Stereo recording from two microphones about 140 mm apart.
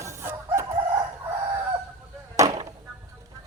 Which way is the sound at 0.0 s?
20° right (ahead or behind).